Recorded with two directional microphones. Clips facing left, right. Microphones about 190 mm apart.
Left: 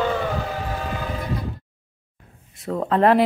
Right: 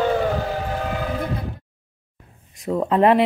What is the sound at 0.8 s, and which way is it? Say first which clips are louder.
Train: right 3 dB; 55° right (ahead or behind).